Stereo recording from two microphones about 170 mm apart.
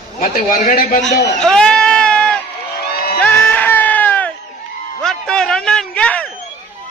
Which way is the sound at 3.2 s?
10° left (ahead or behind).